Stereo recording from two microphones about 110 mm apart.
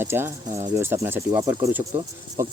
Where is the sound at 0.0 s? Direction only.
20° right (ahead or behind).